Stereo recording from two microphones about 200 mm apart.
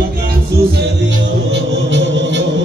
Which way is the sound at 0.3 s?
60° right (ahead or behind).